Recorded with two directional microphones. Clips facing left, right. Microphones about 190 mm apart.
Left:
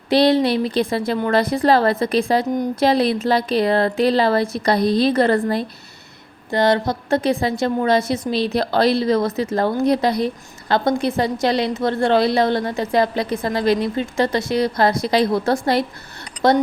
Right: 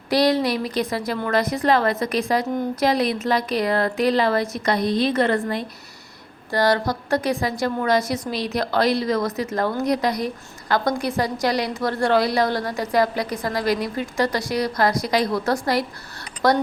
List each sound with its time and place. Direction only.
0.1 s a woman's voice: 25° left (ahead or behind)
6.5 s a woman's voice: 25° left (ahead or behind)